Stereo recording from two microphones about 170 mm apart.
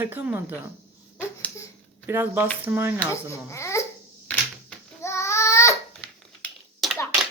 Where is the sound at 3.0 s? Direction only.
15° left (ahead or behind).